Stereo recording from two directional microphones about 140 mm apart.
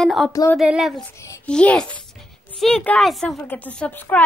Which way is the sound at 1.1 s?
20° left (ahead or behind).